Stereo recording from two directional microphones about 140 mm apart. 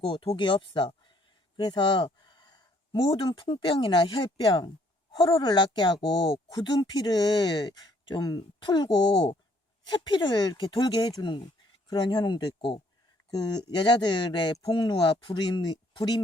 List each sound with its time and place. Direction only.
0.0 s speech: 40° left (ahead or behind)